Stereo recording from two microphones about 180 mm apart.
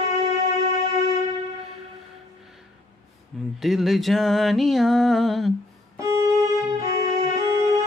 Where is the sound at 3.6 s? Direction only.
Centre (ahead or behind).